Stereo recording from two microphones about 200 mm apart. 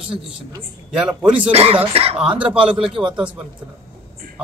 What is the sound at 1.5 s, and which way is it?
Speech, 30° right (ahead or behind).